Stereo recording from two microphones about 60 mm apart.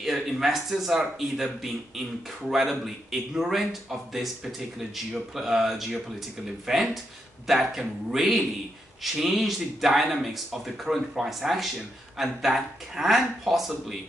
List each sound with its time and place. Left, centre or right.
0.0 s a man's voice: centre